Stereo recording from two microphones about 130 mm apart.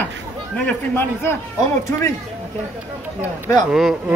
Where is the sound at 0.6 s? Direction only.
15° left (ahead or behind).